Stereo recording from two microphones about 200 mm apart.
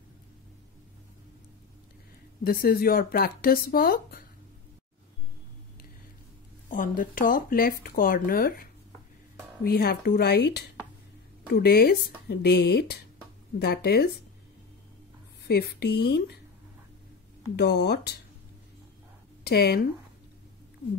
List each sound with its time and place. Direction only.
2.4 s speech: 50° left (ahead or behind)
6.7 s speech: 40° left (ahead or behind)
15.4 s speech: 55° left (ahead or behind)
17.6 s speech: 55° left (ahead or behind)
19.4 s speech: 50° left (ahead or behind)